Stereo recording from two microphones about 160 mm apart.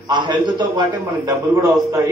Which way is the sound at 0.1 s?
30° right (ahead or behind).